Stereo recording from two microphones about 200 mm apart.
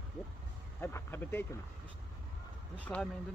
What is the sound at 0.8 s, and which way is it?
Speech, 10° left (ahead or behind).